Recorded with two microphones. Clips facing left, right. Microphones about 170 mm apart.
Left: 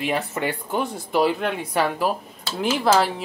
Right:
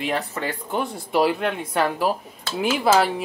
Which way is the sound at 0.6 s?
Centre (ahead or behind).